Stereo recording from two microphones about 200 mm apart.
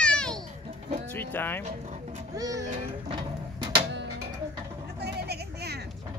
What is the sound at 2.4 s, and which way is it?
Music, 15° right (ahead or behind).